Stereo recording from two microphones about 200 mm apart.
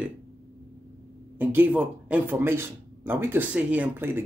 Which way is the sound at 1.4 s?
10° right (ahead or behind).